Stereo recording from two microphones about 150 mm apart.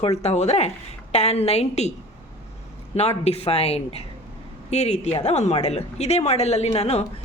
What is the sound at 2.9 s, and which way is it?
A woman's voice, 45° left (ahead or behind).